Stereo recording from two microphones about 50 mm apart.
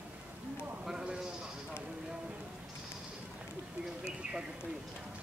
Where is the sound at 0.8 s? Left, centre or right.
Centre.